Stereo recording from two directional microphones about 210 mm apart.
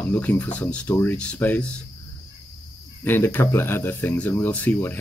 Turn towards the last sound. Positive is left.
turn(degrees=10)  # may be behind; listen again after turning